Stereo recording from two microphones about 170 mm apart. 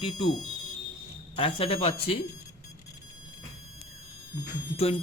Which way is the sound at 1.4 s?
35° left (ahead or behind).